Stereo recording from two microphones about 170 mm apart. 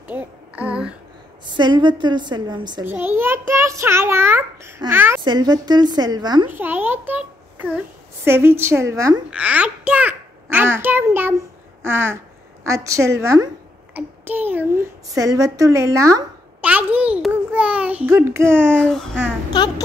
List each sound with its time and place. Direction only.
0.0 s a sound: 10° right (ahead or behind)
1.4 s a woman's voice: 25° right (ahead or behind)
2.8 s a child's voice: 10° right (ahead or behind)
5.2 s a woman's voice: 25° right (ahead or behind)
6.5 s a woman's voice: 10° right (ahead or behind)
9.3 s a child's voice: 10° right (ahead or behind)
12.7 s a child's voice: 15° right (ahead or behind)
18.8 s babbling: 5° left (ahead or behind)
19.6 s a woman's voice: 25° left (ahead or behind)